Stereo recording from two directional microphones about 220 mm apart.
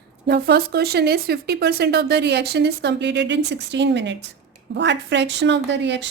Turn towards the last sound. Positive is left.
turn(degrees=-55)  # may be behind; listen again after turning